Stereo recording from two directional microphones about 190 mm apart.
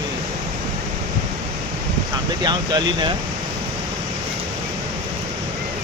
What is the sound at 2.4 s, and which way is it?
Speech, 20° right (ahead or behind).